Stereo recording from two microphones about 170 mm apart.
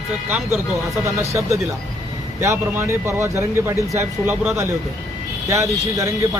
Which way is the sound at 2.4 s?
15° right (ahead or behind).